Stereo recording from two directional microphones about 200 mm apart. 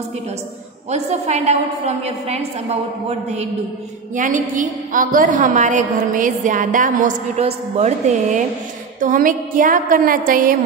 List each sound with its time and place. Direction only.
0.8 s a woman's voice: 35° right (ahead or behind)